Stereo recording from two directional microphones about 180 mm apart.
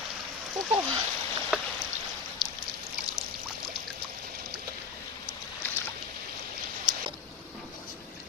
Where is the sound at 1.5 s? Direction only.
5° right (ahead or behind).